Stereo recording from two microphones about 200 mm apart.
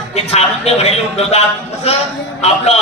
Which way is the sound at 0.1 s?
30° left (ahead or behind).